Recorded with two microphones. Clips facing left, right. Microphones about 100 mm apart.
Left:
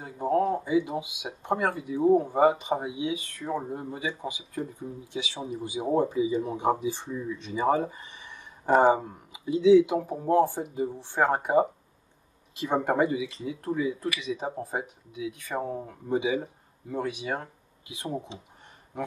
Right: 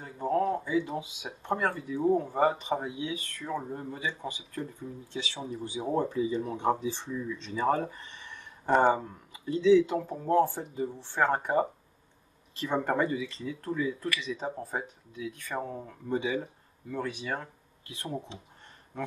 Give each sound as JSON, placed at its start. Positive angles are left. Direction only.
{"t": 0.0, "sound": "speech", "side_deg": 15}
{"t": 12.8, "sound": "speech", "side_deg": 15}